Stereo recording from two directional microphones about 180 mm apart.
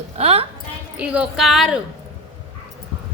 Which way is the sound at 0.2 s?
35° right (ahead or behind).